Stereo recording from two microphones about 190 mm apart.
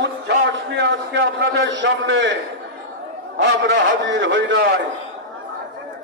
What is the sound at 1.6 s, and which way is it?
Speech, 70° right (ahead or behind).